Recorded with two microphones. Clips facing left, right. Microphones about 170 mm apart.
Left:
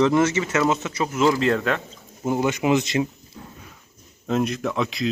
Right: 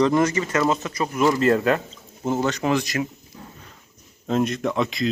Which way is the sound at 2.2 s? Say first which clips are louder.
Left 1 dB; 15° left (ahead or behind).